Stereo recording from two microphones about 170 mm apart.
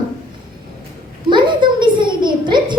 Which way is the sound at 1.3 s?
25° right (ahead or behind).